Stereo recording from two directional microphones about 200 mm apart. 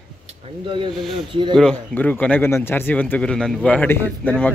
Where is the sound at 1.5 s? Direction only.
5° left (ahead or behind).